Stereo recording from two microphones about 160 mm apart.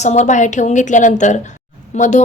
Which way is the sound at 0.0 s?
45° left (ahead or behind).